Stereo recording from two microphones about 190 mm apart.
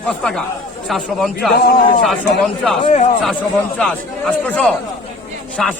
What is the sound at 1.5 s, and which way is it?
A man's voice, 45° left (ahead or behind).